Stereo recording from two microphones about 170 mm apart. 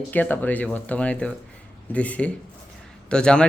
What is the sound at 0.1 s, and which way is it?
Speech, 10° left (ahead or behind).